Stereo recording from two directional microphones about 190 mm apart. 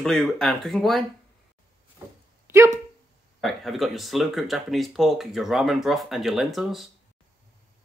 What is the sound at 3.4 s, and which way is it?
Speech, centre (ahead or behind).